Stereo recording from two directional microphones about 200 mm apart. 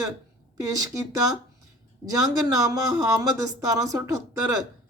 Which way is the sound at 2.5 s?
15° right (ahead or behind).